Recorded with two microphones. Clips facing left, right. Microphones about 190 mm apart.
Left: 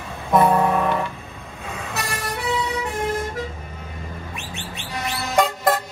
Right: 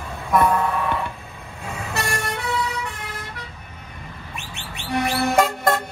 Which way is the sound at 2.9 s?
50° left (ahead or behind).